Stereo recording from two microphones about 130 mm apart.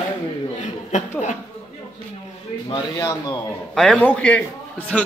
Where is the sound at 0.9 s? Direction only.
65° left (ahead or behind).